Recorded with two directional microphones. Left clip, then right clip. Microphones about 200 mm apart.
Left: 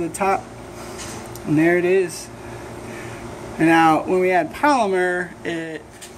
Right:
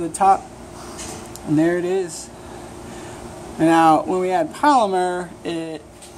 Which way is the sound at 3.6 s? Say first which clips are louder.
Right 1 dB; centre (ahead or behind).